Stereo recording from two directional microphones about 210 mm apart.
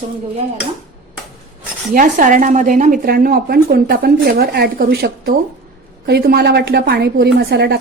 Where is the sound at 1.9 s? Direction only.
40° right (ahead or behind).